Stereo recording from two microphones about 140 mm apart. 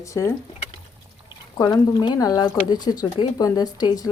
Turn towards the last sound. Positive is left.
turn(degrees=25)  # may be behind; listen again after turning